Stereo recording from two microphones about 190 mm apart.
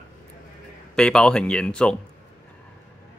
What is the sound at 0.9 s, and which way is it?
Speech, 5° left (ahead or behind).